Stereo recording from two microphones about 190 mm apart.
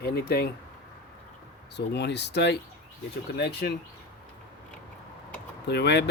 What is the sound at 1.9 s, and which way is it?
Speech, 60° left (ahead or behind).